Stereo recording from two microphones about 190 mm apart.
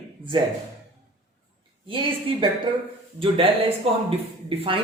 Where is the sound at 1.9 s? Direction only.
30° right (ahead or behind).